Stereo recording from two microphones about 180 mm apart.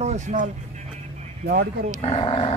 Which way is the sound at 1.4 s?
55° right (ahead or behind).